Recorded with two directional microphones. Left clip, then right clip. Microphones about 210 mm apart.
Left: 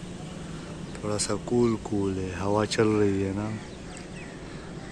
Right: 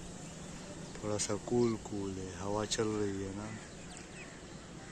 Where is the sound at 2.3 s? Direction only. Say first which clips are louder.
Left 10 dB; 5° left (ahead or behind).